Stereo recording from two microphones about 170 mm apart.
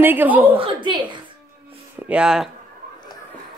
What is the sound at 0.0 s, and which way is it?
Speech, 10° right (ahead or behind).